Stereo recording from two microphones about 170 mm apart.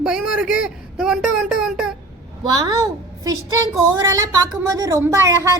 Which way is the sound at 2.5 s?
20° right (ahead or behind).